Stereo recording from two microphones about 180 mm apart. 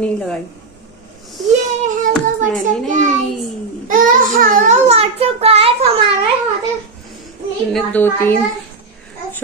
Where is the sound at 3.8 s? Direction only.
50° right (ahead or behind).